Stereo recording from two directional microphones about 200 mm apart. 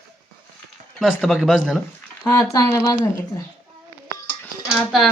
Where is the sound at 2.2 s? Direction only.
15° left (ahead or behind).